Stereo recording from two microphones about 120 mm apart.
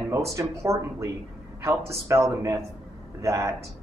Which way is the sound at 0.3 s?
25° right (ahead or behind).